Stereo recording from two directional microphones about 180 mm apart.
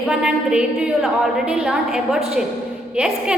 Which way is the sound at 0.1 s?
5° right (ahead or behind).